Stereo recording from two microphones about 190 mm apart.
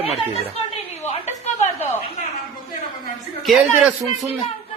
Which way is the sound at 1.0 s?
35° left (ahead or behind).